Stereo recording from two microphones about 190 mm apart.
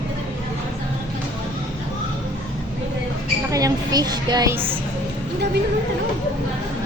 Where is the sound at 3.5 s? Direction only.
20° right (ahead or behind).